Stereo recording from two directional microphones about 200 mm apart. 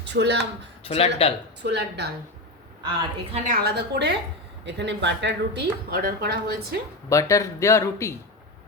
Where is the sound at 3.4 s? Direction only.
55° right (ahead or behind).